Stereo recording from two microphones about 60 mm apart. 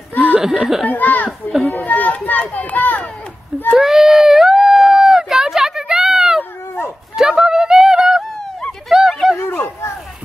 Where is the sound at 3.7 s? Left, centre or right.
Centre.